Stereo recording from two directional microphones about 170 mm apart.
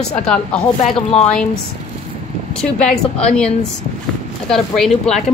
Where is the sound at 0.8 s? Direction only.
40° left (ahead or behind).